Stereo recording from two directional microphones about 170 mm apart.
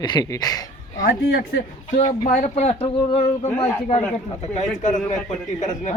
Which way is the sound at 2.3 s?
40° left (ahead or behind).